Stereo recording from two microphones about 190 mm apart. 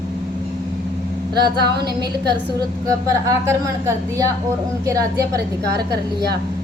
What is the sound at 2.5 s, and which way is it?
A woman's voice, 15° right (ahead or behind).